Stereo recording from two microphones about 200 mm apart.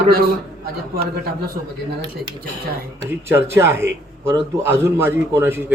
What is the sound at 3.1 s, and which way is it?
Speech, 10° right (ahead or behind).